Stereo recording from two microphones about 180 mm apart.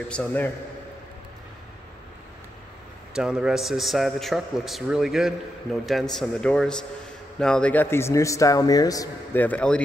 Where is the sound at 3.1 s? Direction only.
5° right (ahead or behind).